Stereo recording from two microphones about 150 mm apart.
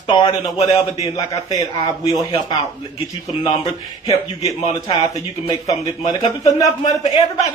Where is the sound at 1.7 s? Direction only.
35° left (ahead or behind).